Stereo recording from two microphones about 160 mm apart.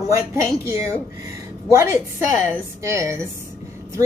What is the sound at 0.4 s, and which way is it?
A woman's voice, 15° right (ahead or behind).